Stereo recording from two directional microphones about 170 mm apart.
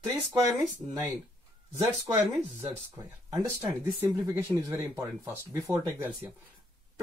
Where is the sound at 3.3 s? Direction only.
20° right (ahead or behind).